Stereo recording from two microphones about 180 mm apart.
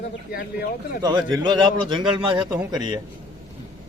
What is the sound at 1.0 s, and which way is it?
Speech, 20° right (ahead or behind).